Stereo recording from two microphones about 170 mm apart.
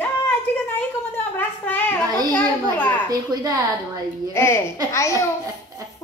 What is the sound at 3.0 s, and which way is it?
Speech, 20° right (ahead or behind).